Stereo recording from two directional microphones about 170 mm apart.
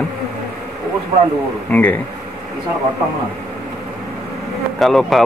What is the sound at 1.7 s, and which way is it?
Speech, 10° left (ahead or behind).